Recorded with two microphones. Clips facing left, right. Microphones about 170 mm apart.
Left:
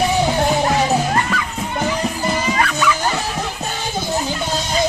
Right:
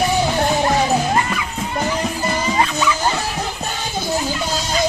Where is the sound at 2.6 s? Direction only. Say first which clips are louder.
Right 2 dB; 20° right (ahead or behind).